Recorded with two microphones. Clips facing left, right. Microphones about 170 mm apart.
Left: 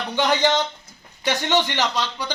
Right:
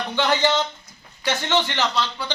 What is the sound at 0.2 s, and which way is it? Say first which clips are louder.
Speech: left 1 dB; 15° left (ahead or behind).